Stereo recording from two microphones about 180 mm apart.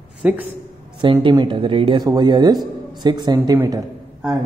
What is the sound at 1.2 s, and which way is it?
Speech, 25° right (ahead or behind).